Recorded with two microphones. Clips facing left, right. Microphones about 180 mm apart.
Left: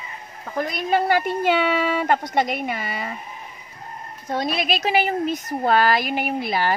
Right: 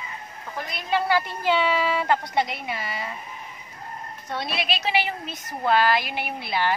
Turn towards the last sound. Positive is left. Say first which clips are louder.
# left 4 dB
turn(degrees=45)  # may be behind; listen again after turning